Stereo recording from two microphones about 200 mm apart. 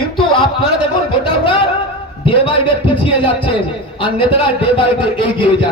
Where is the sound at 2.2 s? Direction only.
25° left (ahead or behind).